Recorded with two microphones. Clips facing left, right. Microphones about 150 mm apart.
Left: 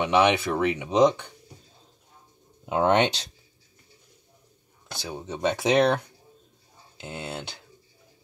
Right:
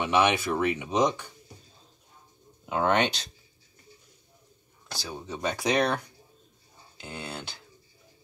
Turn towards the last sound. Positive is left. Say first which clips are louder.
# left 3 dB
turn(degrees=20)  # may be behind; listen again after turning